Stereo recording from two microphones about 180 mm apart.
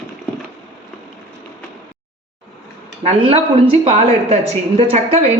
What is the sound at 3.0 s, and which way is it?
A woman's voice, 30° right (ahead or behind).